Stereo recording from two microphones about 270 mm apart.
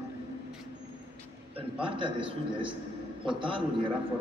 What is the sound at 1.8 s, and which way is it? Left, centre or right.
A man's voice, centre.